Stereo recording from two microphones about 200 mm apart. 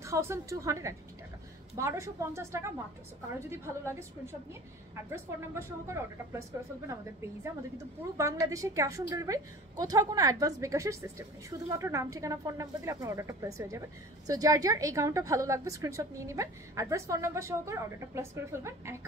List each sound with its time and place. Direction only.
0.0 s speech: 15° right (ahead or behind)